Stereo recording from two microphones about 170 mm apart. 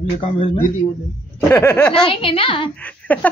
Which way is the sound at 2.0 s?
30° left (ahead or behind).